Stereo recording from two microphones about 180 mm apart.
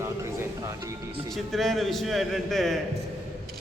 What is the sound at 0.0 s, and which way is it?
Music, 15° right (ahead or behind).